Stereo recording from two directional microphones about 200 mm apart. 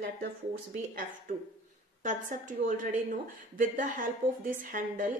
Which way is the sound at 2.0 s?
40° right (ahead or behind).